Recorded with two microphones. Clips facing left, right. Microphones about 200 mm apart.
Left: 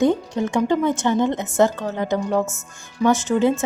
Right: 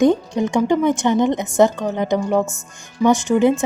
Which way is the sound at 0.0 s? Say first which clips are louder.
Right 3 dB; 15° right (ahead or behind).